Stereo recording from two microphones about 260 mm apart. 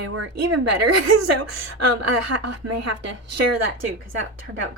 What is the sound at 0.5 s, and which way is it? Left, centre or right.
A woman's voice, right.